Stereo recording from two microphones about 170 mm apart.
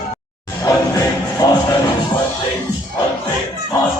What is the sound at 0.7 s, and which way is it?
Music, 20° left (ahead or behind).